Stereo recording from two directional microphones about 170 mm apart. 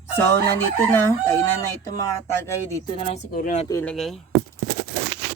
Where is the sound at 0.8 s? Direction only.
15° left (ahead or behind).